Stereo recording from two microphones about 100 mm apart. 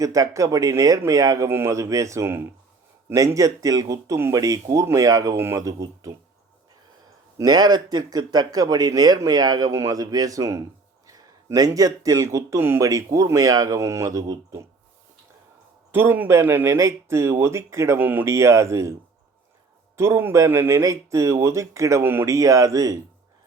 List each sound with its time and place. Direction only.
0.0 s speech: 35° right (ahead or behind)
7.3 s speech: 40° right (ahead or behind)
15.9 s speech: 20° right (ahead or behind)
20.0 s speech: 25° right (ahead or behind)